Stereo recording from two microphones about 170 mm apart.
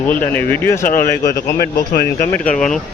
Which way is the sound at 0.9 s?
55° left (ahead or behind).